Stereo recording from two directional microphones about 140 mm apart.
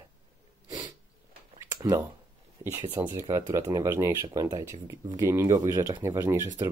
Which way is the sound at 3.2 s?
20° right (ahead or behind).